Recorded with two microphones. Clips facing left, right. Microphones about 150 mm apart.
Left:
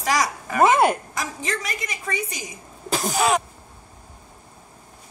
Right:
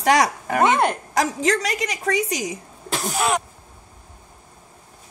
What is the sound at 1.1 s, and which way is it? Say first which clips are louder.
A woman's voice: right 8 dB; 80° right.